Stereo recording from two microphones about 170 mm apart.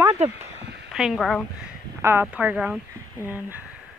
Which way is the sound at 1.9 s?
15° right (ahead or behind).